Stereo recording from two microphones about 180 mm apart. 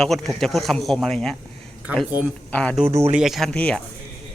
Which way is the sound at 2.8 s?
15° right (ahead or behind).